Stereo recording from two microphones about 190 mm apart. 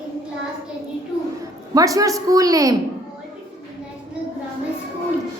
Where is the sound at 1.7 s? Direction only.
20° right (ahead or behind).